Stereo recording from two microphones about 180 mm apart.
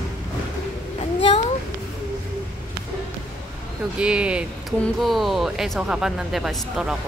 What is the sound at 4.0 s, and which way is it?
Speech, 5° right (ahead or behind).